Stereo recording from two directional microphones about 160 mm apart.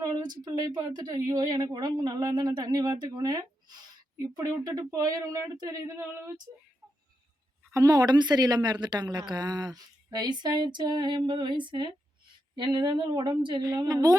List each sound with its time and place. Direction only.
0.0 s a woman's voice: 25° right (ahead or behind)
7.7 s a woman's voice: 20° right (ahead or behind)